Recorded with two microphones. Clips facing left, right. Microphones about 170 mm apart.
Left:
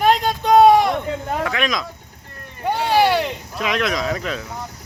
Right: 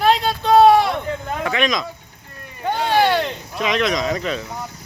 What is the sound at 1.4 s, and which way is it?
Speech, centre (ahead or behind).